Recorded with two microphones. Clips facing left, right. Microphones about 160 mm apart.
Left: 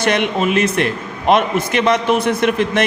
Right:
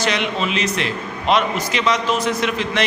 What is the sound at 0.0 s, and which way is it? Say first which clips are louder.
A man's voice: left 5 dB; 55° left (ahead or behind).